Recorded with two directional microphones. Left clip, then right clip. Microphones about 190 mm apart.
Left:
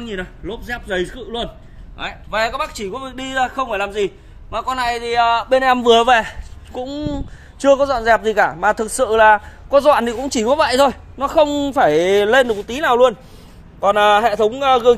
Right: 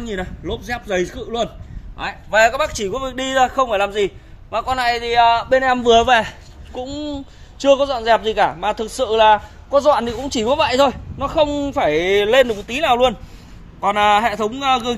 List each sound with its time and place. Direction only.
0.0 s a man's voice: 25° right (ahead or behind); by 15.0 s 15° left (ahead or behind)